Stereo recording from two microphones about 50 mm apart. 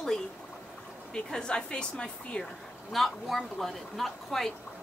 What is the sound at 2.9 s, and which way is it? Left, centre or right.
Speech, centre.